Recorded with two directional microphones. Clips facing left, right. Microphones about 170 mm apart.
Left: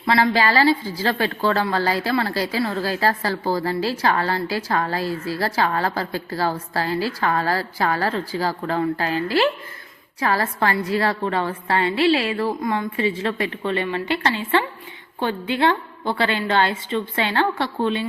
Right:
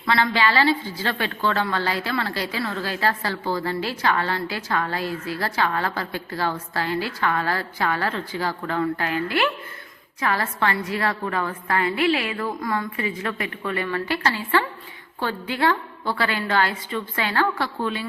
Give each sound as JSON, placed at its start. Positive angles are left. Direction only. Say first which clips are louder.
{"t": 0.3, "sound": "a woman's voice", "louder": "left 3 dB", "side_deg": 40}